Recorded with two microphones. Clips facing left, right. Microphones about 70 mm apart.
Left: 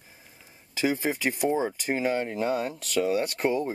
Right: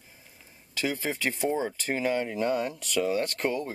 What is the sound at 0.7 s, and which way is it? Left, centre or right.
Speech, left.